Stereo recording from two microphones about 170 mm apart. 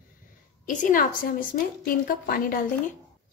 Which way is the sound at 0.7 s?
50° left (ahead or behind).